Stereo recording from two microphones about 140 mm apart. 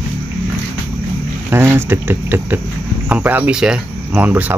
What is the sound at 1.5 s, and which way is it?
Speech, 15° right (ahead or behind).